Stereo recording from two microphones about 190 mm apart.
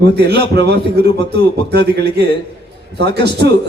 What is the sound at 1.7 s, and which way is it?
A man's voice, 60° right (ahead or behind).